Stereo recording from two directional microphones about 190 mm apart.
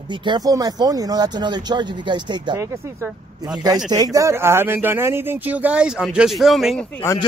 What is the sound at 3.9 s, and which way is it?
A man's voice, 20° right (ahead or behind).